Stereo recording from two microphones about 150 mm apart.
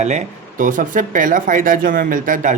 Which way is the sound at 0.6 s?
60° right (ahead or behind).